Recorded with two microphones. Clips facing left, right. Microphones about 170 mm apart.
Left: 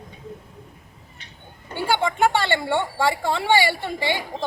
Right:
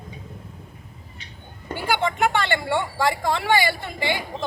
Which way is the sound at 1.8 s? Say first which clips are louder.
Left 2 dB; 30° left (ahead or behind).